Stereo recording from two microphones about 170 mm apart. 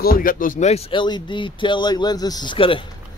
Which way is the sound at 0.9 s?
25° left (ahead or behind).